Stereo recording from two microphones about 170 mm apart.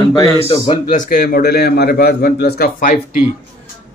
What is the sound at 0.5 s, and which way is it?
A man's voice, 45° left (ahead or behind).